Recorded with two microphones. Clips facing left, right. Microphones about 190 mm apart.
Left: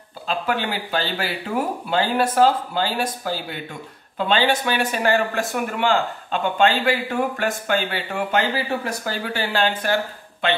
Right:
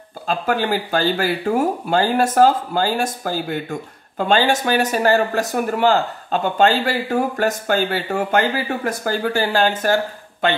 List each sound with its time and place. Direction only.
0.3 s speech: 45° right (ahead or behind)